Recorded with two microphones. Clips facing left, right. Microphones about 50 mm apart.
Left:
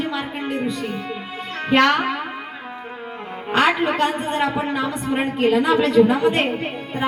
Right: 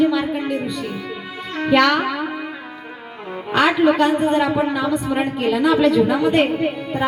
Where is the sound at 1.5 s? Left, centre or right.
Left.